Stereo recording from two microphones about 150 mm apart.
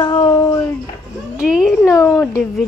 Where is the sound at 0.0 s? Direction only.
30° left (ahead or behind).